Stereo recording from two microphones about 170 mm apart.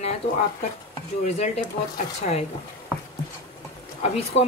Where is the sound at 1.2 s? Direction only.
40° left (ahead or behind).